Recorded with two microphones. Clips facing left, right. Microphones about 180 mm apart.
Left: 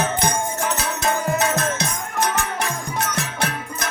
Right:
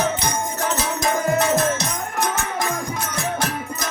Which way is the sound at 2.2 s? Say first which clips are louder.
Left 1 dB; 70° left (ahead or behind).